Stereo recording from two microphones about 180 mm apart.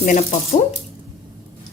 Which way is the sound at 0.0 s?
45° left (ahead or behind).